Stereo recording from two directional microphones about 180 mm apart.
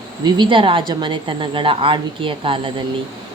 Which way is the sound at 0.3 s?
25° right (ahead or behind).